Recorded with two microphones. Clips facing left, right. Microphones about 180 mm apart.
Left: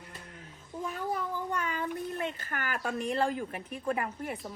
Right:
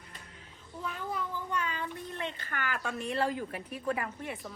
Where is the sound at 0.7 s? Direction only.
20° left (ahead or behind).